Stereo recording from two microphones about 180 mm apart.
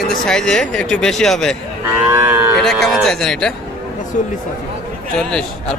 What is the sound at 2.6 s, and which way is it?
Speech, centre (ahead or behind).